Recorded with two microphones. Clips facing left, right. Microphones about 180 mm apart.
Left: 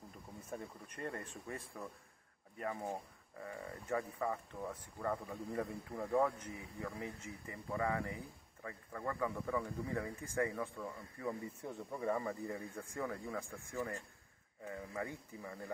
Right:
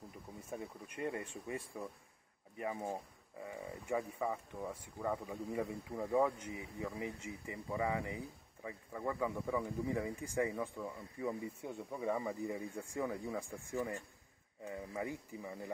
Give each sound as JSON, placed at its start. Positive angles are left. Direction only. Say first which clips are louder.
{"t": 0.5, "sound": "speech", "louder": "right 1 dB", "side_deg": -10}